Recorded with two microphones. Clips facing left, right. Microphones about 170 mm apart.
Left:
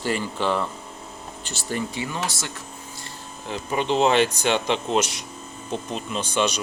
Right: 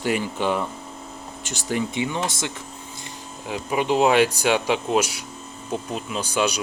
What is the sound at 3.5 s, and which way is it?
Speech, 10° right (ahead or behind).